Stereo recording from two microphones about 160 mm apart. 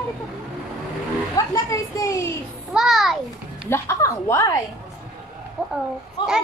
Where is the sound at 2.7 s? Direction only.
Centre (ahead or behind).